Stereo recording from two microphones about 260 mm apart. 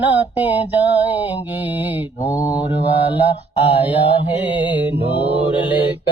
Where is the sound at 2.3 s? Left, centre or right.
Centre.